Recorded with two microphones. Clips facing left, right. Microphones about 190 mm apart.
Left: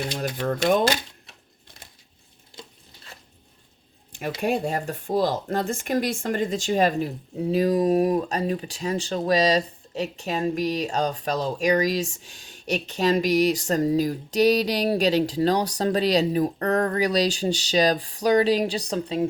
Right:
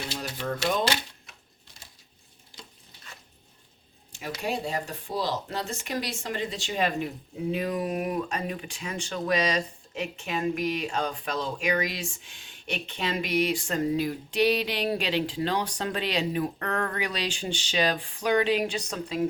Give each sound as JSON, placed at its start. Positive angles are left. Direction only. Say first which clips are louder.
{"t": 0.2, "sound": "speech", "louder": "left 6 dB", "side_deg": 55}
{"t": 4.4, "sound": "speech", "louder": "left 5 dB", "side_deg": 50}